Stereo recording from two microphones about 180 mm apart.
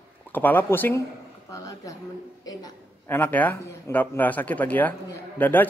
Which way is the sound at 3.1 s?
10° left (ahead or behind).